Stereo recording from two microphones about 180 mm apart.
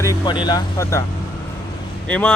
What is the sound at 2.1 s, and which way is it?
Speech, 10° left (ahead or behind).